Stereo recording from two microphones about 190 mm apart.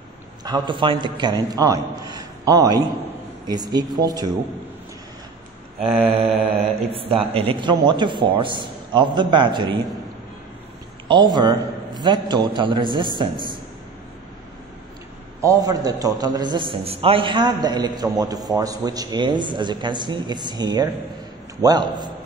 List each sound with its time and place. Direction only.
0.4 s a man's voice: 20° right (ahead or behind)
6.0 s mantra: 30° right (ahead or behind)
6.9 s a man's voice: 30° right (ahead or behind)
11.1 s a man's voice: 25° right (ahead or behind)
15.4 s a man's voice: 20° right (ahead or behind)